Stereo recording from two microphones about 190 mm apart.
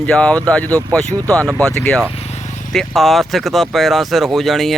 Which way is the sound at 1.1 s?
15° right (ahead or behind).